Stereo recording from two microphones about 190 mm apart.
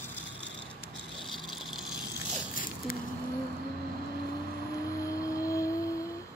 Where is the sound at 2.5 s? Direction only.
45° left (ahead or behind).